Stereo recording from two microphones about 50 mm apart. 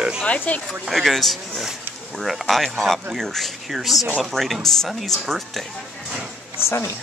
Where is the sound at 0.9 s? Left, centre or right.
Centre.